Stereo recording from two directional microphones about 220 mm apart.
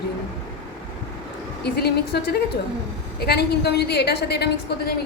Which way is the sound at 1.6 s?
45° left (ahead or behind).